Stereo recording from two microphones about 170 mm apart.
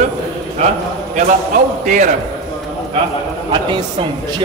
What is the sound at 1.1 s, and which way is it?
Speech, 50° right (ahead or behind).